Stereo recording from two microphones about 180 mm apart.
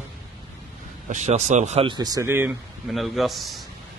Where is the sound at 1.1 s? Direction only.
40° right (ahead or behind).